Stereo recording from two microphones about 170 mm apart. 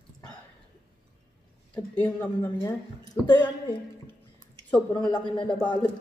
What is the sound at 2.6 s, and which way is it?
Speech, 20° left (ahead or behind).